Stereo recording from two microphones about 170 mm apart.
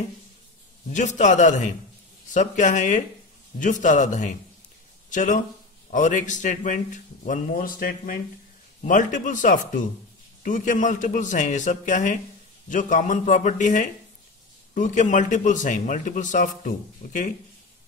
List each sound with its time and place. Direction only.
0.9 s a man's voice: 45° left (ahead or behind)